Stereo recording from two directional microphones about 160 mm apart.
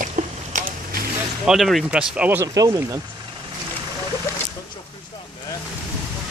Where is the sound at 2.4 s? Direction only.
20° right (ahead or behind).